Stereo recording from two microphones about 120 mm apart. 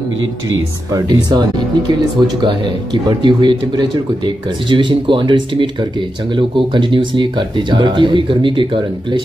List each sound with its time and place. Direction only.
0.9 s speech: 35° right (ahead or behind)